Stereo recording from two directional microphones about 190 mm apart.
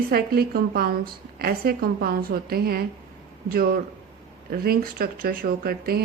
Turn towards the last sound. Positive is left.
turn(degrees=-50)  # may be behind; listen again after turning